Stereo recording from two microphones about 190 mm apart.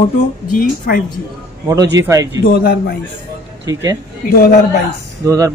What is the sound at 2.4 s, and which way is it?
Speech, 55° left (ahead or behind).